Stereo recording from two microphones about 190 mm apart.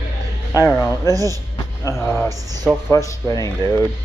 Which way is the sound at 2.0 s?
15° left (ahead or behind).